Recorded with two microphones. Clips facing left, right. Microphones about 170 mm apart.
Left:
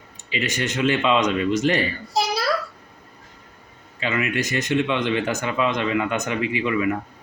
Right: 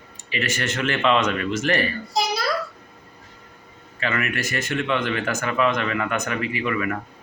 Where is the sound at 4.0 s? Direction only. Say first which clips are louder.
Left 2 dB; 20° left (ahead or behind).